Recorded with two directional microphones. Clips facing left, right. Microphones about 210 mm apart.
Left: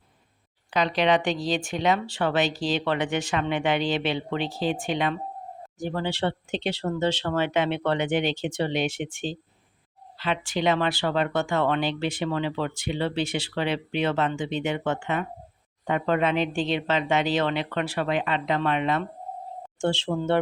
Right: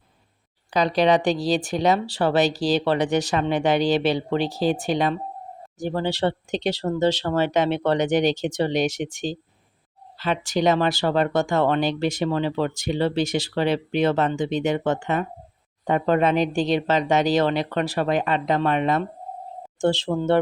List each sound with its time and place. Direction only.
0.7 s speech: 35° right (ahead or behind)